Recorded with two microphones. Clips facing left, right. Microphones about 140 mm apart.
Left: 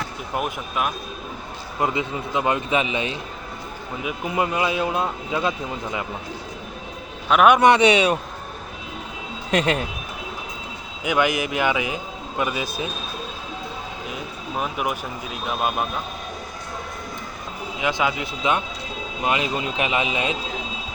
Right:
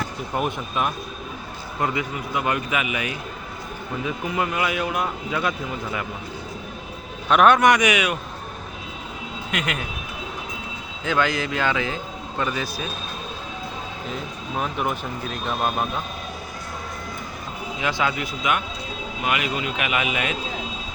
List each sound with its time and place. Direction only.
0.3 s speech: 5° left (ahead or behind)
1.8 s speech: 20° left (ahead or behind)
7.3 s a man's voice: 5° left (ahead or behind)
7.5 s speech: 25° left (ahead or behind)
9.5 s speech: 35° left (ahead or behind)
11.0 s speech: 15° left (ahead or behind)
14.1 s speech: 5° left (ahead or behind)
17.7 s speech: 15° left (ahead or behind)